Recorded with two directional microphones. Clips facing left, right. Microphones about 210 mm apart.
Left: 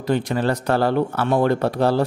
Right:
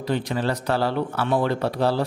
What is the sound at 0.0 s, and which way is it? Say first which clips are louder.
Speech: left 4 dB; 45° left (ahead or behind).